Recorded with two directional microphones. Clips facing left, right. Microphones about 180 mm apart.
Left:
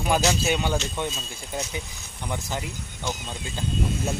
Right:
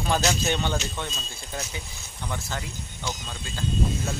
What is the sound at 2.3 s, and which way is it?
Speech, 15° left (ahead or behind).